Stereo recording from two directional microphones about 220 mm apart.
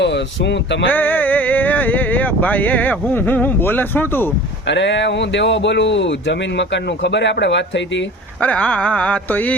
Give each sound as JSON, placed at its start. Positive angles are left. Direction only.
{"t": 0.0, "sound": "speech", "side_deg": 50}
{"t": 0.9, "sound": "speech", "side_deg": 10}
{"t": 4.7, "sound": "speech", "side_deg": 55}
{"t": 8.4, "sound": "a sound", "side_deg": 5}